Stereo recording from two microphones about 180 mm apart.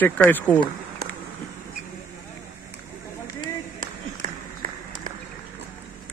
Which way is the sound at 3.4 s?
45° right (ahead or behind).